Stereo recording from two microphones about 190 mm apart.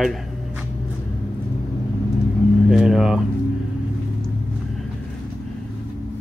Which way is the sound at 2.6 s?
5° right (ahead or behind).